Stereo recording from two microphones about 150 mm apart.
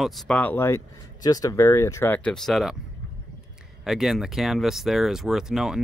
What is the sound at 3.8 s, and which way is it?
Speech, centre (ahead or behind).